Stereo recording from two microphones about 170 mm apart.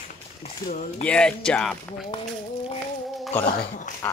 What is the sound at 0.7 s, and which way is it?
Speech, 50° left (ahead or behind).